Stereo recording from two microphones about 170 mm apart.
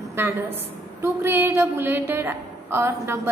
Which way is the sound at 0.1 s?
15° right (ahead or behind).